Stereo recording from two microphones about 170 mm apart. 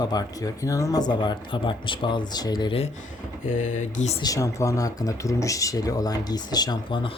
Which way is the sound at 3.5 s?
45° left (ahead or behind).